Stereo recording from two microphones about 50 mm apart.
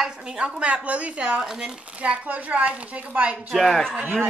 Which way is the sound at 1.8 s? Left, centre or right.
Right.